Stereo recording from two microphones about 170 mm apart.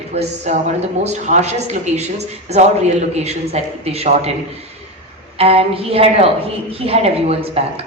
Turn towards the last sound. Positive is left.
turn(degrees=-35)  # may be behind; listen again after turning